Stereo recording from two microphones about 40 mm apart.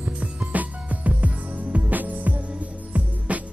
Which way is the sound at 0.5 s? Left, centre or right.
Right.